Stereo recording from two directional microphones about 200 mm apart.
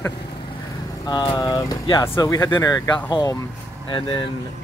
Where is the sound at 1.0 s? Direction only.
20° left (ahead or behind).